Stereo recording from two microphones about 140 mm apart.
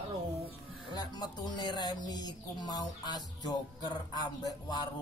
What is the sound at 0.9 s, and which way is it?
Speech, 30° left (ahead or behind).